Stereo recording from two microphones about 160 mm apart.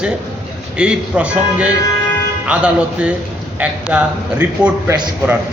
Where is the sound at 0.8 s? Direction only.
5° right (ahead or behind).